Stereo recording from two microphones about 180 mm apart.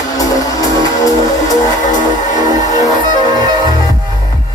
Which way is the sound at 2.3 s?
45° left (ahead or behind).